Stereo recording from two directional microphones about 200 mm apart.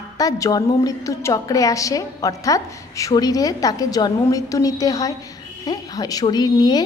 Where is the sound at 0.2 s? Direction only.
20° left (ahead or behind).